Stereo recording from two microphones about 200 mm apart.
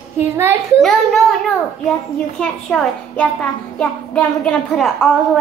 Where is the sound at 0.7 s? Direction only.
Centre (ahead or behind).